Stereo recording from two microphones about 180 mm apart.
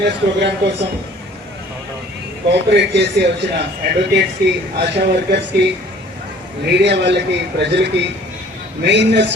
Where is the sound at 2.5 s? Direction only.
70° right (ahead or behind).